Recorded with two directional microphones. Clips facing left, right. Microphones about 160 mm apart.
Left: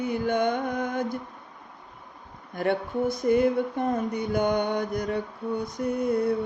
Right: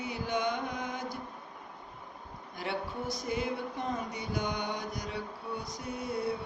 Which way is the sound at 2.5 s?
55° left (ahead or behind).